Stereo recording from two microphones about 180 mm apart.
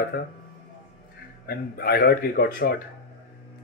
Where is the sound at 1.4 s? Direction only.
60° left (ahead or behind).